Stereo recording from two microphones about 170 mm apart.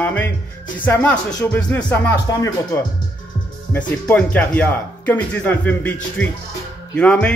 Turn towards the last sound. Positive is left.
turn(degrees=5)  # may be behind; listen again after turning